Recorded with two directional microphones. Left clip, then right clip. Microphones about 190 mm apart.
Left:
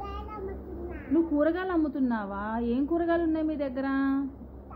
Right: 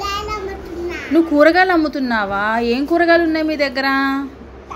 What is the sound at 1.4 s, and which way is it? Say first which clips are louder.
A woman's voice: right 15 dB; 20° right (ahead or behind).